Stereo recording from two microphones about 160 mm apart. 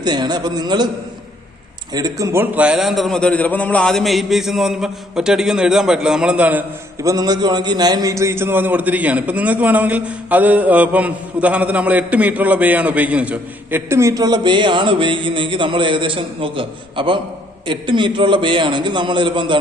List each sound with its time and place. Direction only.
0.0 s a man's voice: 25° right (ahead or behind)
2.0 s a man's voice: 20° right (ahead or behind)